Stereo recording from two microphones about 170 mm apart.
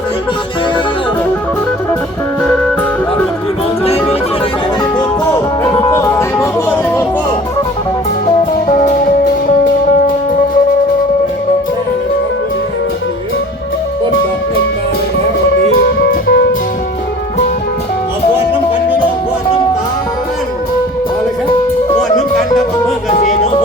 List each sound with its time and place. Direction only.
4.9 s music: 20° left (ahead or behind)
8.6 s music: 45° left (ahead or behind)
16.2 s music: 75° left (ahead or behind)
23.1 s music: 35° left (ahead or behind)